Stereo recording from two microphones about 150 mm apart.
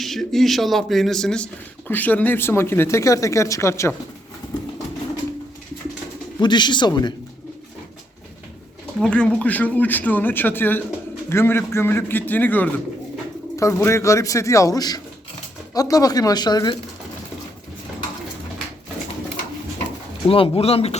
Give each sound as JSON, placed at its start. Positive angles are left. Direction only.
{"t": 0.0, "sound": "speech", "side_deg": 0}
{"t": 6.4, "sound": "speech", "side_deg": 30}
{"t": 9.0, "sound": "speech", "side_deg": 5}
{"t": 20.2, "sound": "speech", "side_deg": 40}